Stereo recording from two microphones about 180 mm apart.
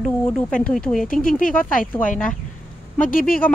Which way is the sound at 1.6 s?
50° left (ahead or behind).